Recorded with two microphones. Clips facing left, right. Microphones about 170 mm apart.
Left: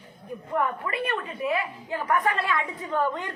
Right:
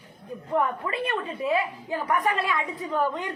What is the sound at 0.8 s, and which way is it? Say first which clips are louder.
A woman's voice: right 1 dB; 25° right (ahead or behind).